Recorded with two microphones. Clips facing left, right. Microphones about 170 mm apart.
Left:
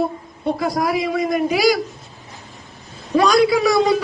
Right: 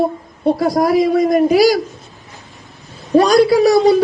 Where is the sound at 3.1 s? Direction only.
40° right (ahead or behind).